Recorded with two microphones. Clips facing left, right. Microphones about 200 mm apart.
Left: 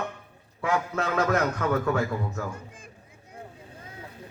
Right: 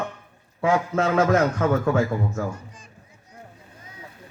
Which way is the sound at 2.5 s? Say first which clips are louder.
Right 4 dB; 55° left (ahead or behind).